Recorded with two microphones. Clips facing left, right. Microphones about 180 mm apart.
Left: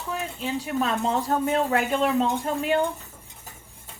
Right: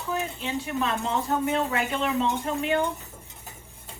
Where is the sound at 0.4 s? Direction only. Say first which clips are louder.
Left 5 dB; 35° left (ahead or behind).